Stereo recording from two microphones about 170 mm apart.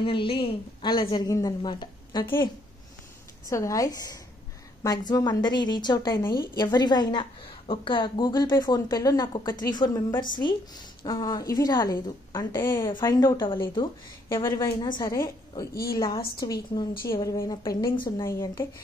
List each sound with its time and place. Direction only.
0.0 s a woman's voice: 30° left (ahead or behind)
3.4 s a woman's voice: 20° left (ahead or behind)
16.9 s a woman's voice: 60° left (ahead or behind)
17.2 s a woman's voice: 20° left (ahead or behind)